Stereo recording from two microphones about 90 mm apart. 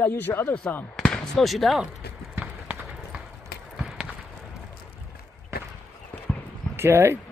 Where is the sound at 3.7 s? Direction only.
5° right (ahead or behind).